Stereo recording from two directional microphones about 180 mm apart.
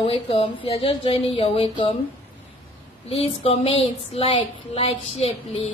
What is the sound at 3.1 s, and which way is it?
A woman's voice, 35° left (ahead or behind).